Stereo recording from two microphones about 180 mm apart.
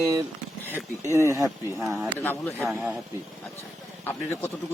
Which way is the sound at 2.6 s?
5° right (ahead or behind).